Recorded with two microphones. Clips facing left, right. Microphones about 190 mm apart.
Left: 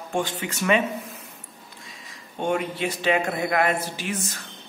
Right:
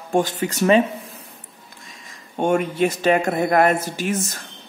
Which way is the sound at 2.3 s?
50° right (ahead or behind).